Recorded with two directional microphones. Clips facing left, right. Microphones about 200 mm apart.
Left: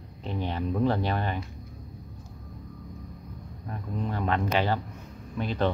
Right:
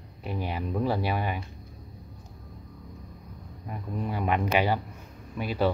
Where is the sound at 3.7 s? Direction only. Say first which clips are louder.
Even; 10° right (ahead or behind).